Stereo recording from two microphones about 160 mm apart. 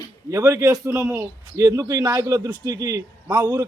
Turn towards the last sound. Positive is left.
turn(degrees=-25)  # may be behind; listen again after turning